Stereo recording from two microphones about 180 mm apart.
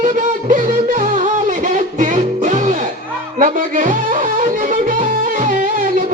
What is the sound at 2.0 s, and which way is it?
Music, 45° right (ahead or behind).